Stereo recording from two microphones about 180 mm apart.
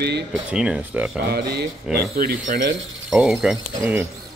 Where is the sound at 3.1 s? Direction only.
Centre (ahead or behind).